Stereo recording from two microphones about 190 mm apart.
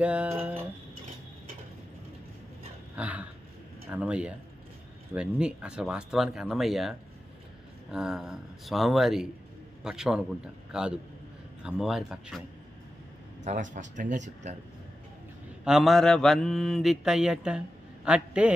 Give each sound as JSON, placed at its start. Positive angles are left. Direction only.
{"t": 0.0, "sound": "speech", "side_deg": -5}
{"t": 3.0, "sound": "a sound", "side_deg": -5}
{"t": 3.9, "sound": "speech", "side_deg": -5}
{"t": 5.1, "sound": "mantra", "side_deg": -5}
{"t": 13.4, "sound": "speech", "side_deg": -40}
{"t": 15.6, "sound": "mantra", "side_deg": 0}